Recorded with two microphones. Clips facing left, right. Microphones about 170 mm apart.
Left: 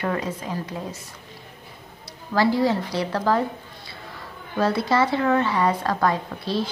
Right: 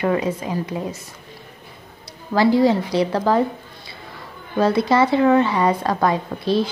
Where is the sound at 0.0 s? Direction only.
15° right (ahead or behind).